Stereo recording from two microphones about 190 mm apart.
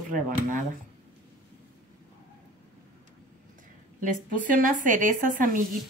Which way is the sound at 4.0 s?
45° right (ahead or behind).